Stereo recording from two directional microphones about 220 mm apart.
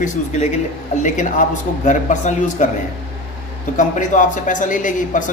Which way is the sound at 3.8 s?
35° left (ahead or behind).